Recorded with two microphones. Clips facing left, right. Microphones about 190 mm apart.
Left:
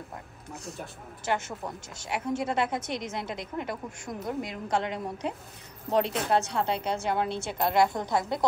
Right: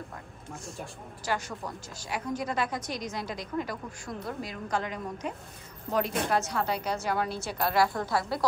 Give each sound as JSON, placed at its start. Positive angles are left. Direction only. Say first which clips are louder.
{"t": 1.2, "sound": "speech", "louder": "left 2 dB", "side_deg": 25}